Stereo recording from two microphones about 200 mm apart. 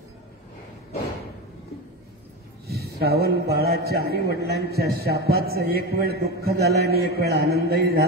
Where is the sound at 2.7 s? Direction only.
50° right (ahead or behind).